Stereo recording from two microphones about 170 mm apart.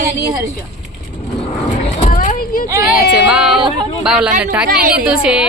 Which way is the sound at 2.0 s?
50° left (ahead or behind).